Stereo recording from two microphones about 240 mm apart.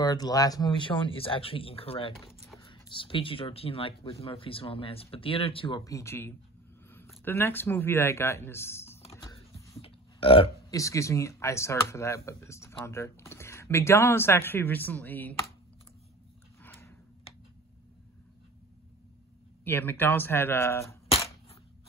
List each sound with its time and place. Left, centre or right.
0.0 s speech: centre
9.1 s typing: centre
9.8 s speech: left; by 15.3 s centre
16.6 s a sound: centre
19.6 s speech: centre